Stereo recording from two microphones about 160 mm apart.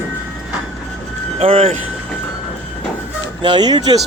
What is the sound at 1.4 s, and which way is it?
Speech, 35° right (ahead or behind).